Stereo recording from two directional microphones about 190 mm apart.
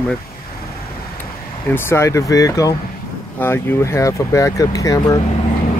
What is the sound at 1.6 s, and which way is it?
Speech, 10° left (ahead or behind).